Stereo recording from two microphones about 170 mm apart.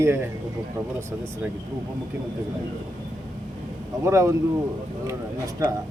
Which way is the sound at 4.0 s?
20° right (ahead or behind).